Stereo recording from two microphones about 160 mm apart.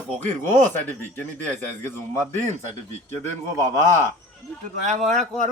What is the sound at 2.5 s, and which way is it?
Speech, 45° right (ahead or behind).